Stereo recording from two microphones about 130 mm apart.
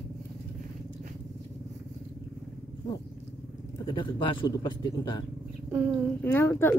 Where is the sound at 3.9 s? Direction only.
40° left (ahead or behind).